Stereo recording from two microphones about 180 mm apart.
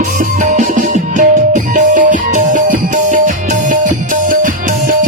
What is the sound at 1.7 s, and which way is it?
Music, 45° right (ahead or behind).